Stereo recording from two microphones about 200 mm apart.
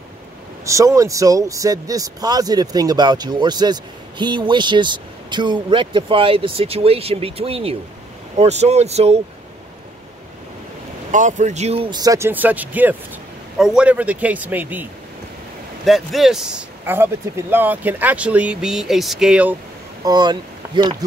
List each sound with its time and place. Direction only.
0.7 s speech: 15° right (ahead or behind); by 9.2 s 30° right (ahead or behind)
11.1 s a man's voice: 40° right (ahead or behind); by 19.5 s 5° right (ahead or behind)
20.1 s speech: 20° right (ahead or behind)